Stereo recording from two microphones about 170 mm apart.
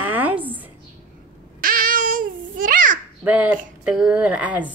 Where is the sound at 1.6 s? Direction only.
55° right (ahead or behind).